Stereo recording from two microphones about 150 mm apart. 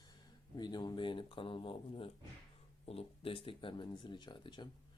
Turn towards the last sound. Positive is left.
turn(degrees=30)  # may be behind; listen again after turning